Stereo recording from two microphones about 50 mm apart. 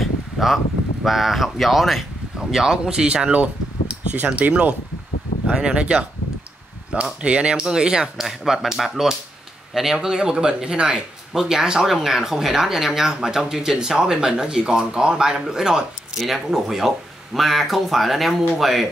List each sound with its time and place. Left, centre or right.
0.0 s a sound: centre
1.0 s speech: centre
2.3 s speech: centre; by 4.7 s right
5.5 s speech: centre
7.2 s speech: right; by 18.9 s centre